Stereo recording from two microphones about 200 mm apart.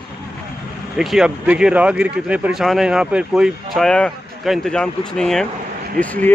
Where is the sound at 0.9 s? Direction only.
Centre (ahead or behind).